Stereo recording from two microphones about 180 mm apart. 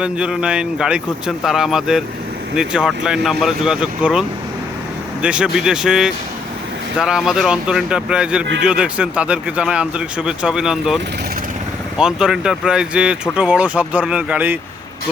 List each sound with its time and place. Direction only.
0.0 s speech: 5° right (ahead or behind)